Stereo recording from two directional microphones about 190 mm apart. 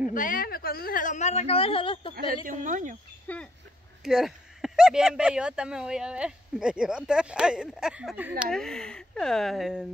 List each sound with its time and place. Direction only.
0.1 s a woman's voice: 45° left (ahead or behind); by 2.1 s 30° left (ahead or behind)
2.4 s speech: 40° right (ahead or behind)
3.3 s speech: 10° left (ahead or behind); by 8.5 s 10° right (ahead or behind)
8.5 s speech: 5° left (ahead or behind)